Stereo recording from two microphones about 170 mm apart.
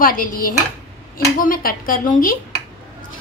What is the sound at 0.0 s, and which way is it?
A woman's voice, 55° left (ahead or behind).